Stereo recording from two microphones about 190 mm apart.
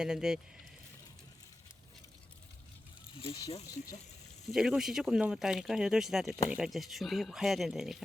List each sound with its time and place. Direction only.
0.0 s speech: 5° right (ahead or behind)
3.2 s speech: 30° left (ahead or behind)
4.4 s speech: 5° right (ahead or behind)